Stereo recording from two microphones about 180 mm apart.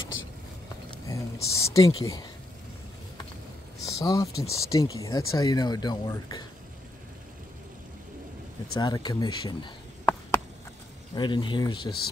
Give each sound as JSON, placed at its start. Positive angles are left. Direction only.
{"t": 0.0, "sound": "vehicle", "side_deg": 90}
{"t": 0.8, "sound": "a sound", "side_deg": 20}
{"t": 3.8, "sound": "speech", "side_deg": 20}
{"t": 8.8, "sound": "speech", "side_deg": 20}
{"t": 11.1, "sound": "speech", "side_deg": 25}